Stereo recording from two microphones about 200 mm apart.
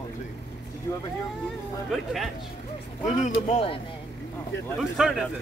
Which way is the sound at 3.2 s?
30° left (ahead or behind).